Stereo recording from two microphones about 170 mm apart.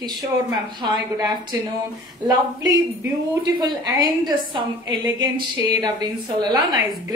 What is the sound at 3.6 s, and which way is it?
A woman's voice, 25° right (ahead or behind).